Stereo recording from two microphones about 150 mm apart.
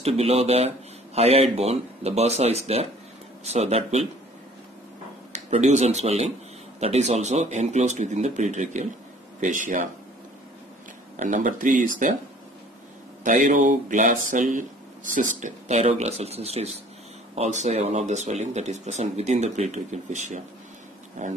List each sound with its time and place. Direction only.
0.0 s speech: 45° right (ahead or behind)
5.3 s speech: 50° right (ahead or behind)
11.1 s speech: 55° right (ahead or behind)
13.2 s speech: 60° right (ahead or behind)